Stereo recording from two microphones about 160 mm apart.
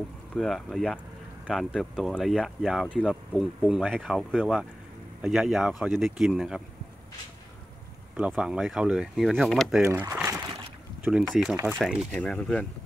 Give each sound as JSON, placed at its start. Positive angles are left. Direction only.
{"t": 0.3, "sound": "speech", "side_deg": 0}
{"t": 8.2, "sound": "speech", "side_deg": -5}
{"t": 9.8, "sound": "speech", "side_deg": -15}
{"t": 10.1, "sound": "a sound", "side_deg": -15}
{"t": 11.6, "sound": "speech", "side_deg": 0}